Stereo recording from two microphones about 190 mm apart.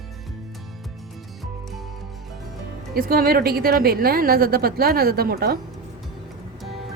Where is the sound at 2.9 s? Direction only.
50° right (ahead or behind).